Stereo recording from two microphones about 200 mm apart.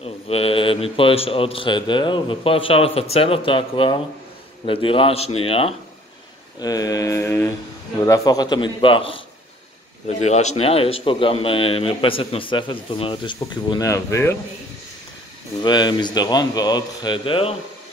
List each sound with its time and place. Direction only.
0.0 s a man's voice: 30° left (ahead or behind)
6.6 s mantra: 20° left (ahead or behind)
8.0 s a man's voice: 20° left (ahead or behind)
15.6 s a man's voice: 20° left (ahead or behind)